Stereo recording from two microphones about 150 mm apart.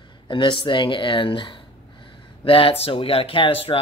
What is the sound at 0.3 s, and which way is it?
Speech, 35° left (ahead or behind).